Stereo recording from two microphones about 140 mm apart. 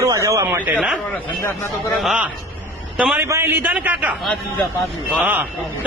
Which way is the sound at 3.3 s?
15° right (ahead or behind).